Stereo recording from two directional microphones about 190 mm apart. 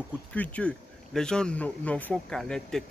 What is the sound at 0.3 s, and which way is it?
Speech, 5° left (ahead or behind).